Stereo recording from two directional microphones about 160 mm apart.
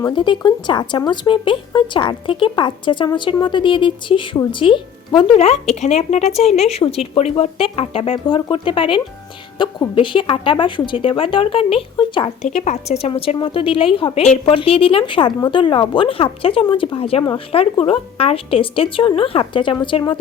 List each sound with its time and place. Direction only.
0.1 s a woman's voice: 30° left (ahead or behind)
5.4 s a woman's voice: 40° left (ahead or behind)
12.5 s a woman's voice: 45° left (ahead or behind); by 20.1 s 30° left (ahead or behind)